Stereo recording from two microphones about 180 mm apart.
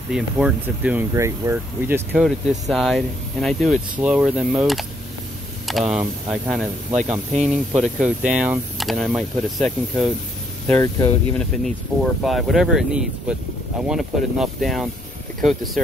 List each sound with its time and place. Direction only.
0.1 s speech: 5° right (ahead or behind)
1.1 s speech: 15° right (ahead or behind)
2.1 s speech: 5° right (ahead or behind)
10.7 s speech: 15° left (ahead or behind)
11.3 s speech: 5° left (ahead or behind)